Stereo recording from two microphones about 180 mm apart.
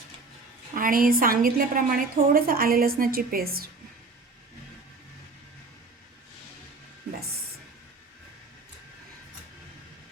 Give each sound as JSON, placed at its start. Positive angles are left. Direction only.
{"t": 0.8, "sound": "a woman's voice", "side_deg": -50}